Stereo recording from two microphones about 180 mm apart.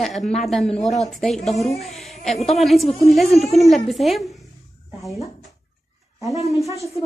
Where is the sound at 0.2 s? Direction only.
40° left (ahead or behind).